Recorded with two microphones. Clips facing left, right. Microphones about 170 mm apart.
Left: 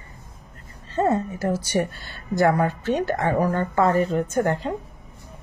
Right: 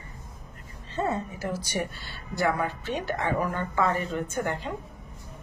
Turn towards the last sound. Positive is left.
turn(degrees=40)  # may be behind; listen again after turning